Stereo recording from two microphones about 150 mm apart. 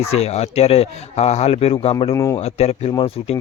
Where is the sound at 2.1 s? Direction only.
20° left (ahead or behind).